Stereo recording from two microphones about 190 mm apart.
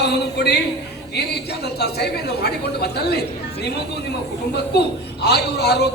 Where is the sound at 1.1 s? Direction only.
60° left (ahead or behind).